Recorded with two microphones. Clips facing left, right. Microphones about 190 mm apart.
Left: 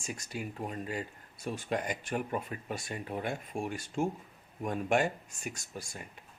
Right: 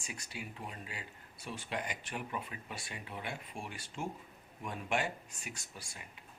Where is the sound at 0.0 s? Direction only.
45° left (ahead or behind).